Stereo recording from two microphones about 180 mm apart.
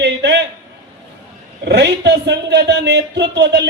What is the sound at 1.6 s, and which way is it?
Speech, 70° right (ahead or behind).